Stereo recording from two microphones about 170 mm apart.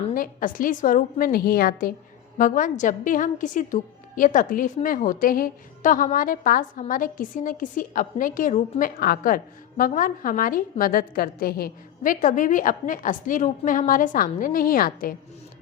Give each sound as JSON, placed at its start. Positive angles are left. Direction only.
{"t": 0.1, "sound": "a woman's voice", "side_deg": 55}
{"t": 2.4, "sound": "a woman's voice", "side_deg": 50}